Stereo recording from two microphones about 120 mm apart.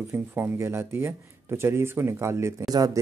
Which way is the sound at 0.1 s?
20° right (ahead or behind).